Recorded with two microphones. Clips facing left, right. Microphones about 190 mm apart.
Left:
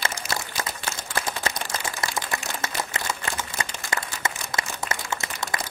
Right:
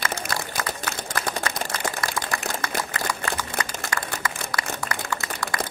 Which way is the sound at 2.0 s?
25° left (ahead or behind).